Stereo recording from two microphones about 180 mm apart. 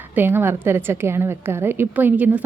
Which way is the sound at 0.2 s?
10° right (ahead or behind).